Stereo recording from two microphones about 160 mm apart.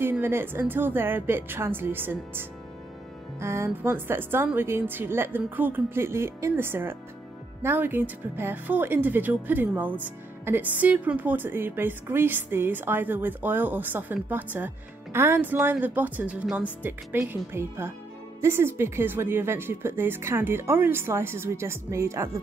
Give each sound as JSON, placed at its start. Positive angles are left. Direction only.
{"t": 0.0, "sound": "speech", "side_deg": -15}